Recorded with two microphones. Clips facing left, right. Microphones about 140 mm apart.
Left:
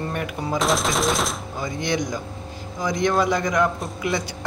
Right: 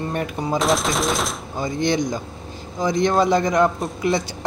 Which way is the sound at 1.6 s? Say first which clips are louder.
Right 5 dB; 30° right (ahead or behind).